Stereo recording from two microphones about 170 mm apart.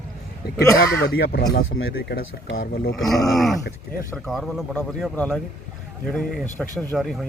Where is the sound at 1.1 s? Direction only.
65° left (ahead or behind).